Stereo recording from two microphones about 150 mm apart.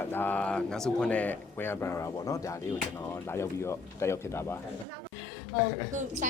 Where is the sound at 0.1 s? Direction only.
10° left (ahead or behind).